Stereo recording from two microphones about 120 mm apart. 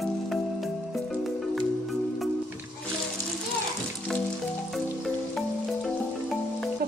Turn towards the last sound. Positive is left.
turn(degrees=0)  # may be behind; listen again after turning